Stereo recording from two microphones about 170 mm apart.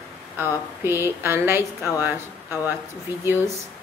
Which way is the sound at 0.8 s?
15° right (ahead or behind).